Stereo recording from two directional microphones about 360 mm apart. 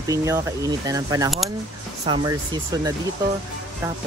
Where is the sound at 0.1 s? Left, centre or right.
Centre.